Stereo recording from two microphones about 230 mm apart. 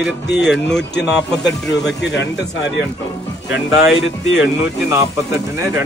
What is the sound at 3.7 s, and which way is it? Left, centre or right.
Speech, left.